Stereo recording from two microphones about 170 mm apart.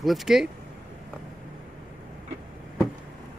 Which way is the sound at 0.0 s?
Centre (ahead or behind).